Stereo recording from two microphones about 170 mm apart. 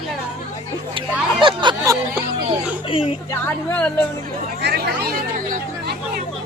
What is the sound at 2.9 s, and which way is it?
Speech, 30° left (ahead or behind).